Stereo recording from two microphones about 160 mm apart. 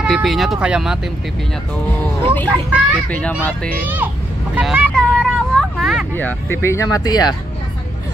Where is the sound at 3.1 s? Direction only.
10° left (ahead or behind).